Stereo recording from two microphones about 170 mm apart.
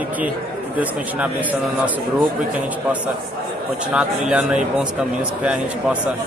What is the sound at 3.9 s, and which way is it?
A man's voice, 5° right (ahead or behind).